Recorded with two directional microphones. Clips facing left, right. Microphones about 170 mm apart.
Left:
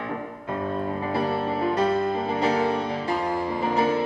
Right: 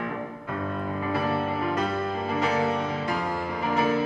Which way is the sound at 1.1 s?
30° left (ahead or behind).